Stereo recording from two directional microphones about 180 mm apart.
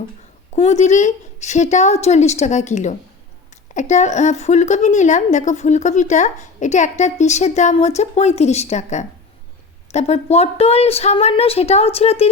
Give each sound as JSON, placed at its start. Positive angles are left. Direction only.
{"t": 0.5, "sound": "a woman's voice", "side_deg": 40}